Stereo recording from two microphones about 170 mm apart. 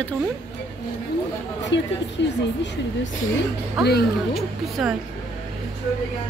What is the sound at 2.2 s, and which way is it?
Speech, 90° left.